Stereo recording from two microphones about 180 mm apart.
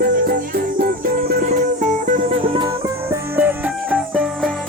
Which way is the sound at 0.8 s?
55° right (ahead or behind).